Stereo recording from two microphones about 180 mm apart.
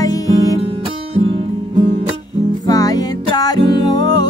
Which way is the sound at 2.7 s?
20° left (ahead or behind).